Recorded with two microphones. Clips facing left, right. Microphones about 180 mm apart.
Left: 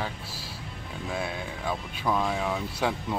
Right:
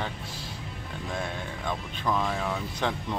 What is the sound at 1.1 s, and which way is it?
Speech, 5° left (ahead or behind).